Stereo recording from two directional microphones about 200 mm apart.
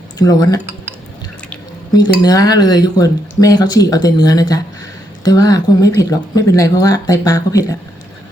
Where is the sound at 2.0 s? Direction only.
20° left (ahead or behind).